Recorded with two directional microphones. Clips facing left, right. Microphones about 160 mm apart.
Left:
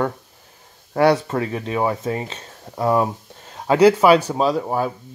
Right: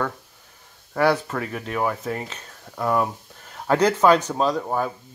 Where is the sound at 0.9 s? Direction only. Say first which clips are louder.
Left 4 dB; 25° left (ahead or behind).